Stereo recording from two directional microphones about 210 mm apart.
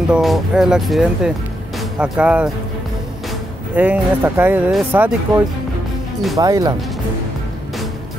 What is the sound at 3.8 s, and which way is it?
Speech, 10° right (ahead or behind).